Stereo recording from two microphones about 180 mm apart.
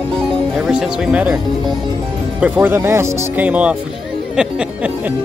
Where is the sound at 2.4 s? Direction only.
10° right (ahead or behind).